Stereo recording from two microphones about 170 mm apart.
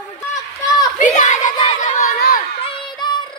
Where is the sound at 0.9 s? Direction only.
45° left (ahead or behind).